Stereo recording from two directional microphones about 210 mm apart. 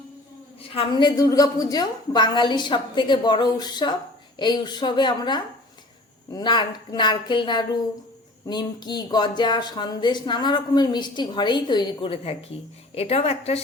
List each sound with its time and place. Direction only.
0.7 s speech: 25° left (ahead or behind)